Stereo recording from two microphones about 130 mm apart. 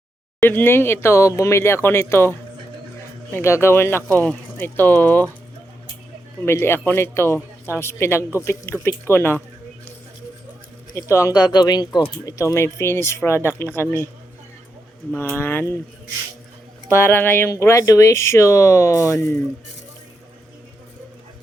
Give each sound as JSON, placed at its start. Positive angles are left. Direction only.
{"t": 0.3, "sound": "speech", "side_deg": 15}
{"t": 3.3, "sound": "speech", "side_deg": 20}
{"t": 6.4, "sound": "speech", "side_deg": 20}
{"t": 10.9, "sound": "speech", "side_deg": 25}
{"t": 15.1, "sound": "speech", "side_deg": 15}
{"t": 17.1, "sound": "speech", "side_deg": 15}